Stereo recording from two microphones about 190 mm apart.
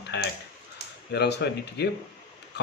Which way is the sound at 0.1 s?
65° left (ahead or behind).